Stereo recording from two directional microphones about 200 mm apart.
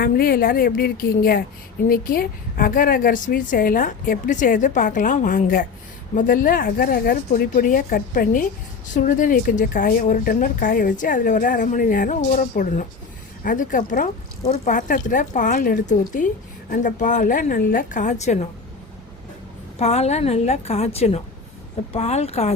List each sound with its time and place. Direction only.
0.0 s a woman's voice: 45° left (ahead or behind)
19.8 s speech: 30° left (ahead or behind)